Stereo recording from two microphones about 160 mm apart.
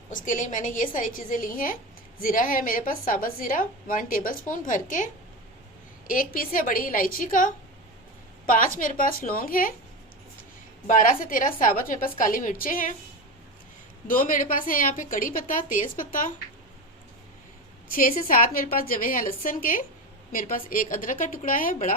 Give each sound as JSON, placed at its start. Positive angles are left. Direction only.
{"t": 0.1, "sound": "a woman's voice", "side_deg": 55}
{"t": 6.1, "sound": "a woman's voice", "side_deg": 60}
{"t": 10.8, "sound": "a woman's voice", "side_deg": 55}
{"t": 14.1, "sound": "a woman's voice", "side_deg": 55}
{"t": 18.2, "sound": "a woman's voice", "side_deg": 60}